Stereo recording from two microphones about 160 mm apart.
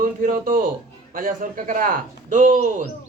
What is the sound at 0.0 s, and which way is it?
Speech, 55° right (ahead or behind).